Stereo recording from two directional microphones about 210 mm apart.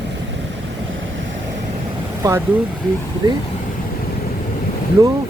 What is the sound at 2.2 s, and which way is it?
Speech, 15° right (ahead or behind).